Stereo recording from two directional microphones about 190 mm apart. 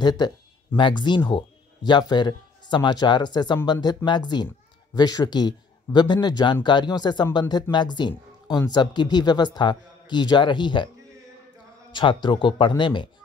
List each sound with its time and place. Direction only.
0.0 s a man's voice: 20° left (ahead or behind)
11.9 s a man's voice: 25° left (ahead or behind)